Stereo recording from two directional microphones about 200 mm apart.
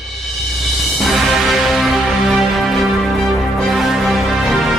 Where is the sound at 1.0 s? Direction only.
Centre (ahead or behind).